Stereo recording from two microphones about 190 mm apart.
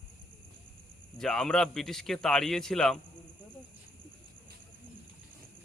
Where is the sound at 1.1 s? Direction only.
Centre (ahead or behind).